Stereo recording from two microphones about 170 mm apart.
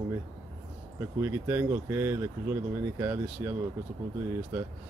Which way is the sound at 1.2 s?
15° right (ahead or behind).